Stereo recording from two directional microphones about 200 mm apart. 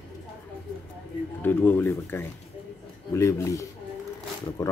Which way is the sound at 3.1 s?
15° left (ahead or behind).